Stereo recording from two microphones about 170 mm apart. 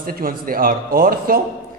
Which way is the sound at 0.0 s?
60° right (ahead or behind).